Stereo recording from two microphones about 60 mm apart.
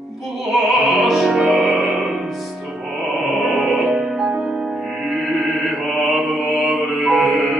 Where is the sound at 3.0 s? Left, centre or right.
Centre.